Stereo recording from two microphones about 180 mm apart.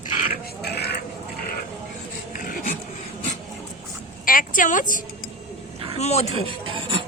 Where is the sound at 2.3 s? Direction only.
50° left (ahead or behind).